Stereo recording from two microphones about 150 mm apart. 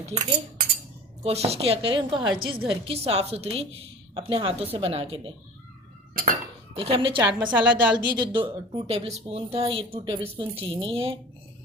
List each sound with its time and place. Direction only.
0.0 s a woman's voice: 45° right (ahead or behind)
6.7 s a woman's voice: 40° right (ahead or behind)
7.5 s a woman's voice: 10° right (ahead or behind)
7.9 s a woman's voice: 30° right (ahead or behind)